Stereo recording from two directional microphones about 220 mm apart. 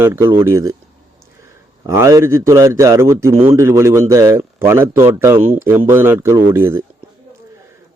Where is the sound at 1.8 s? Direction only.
15° right (ahead or behind).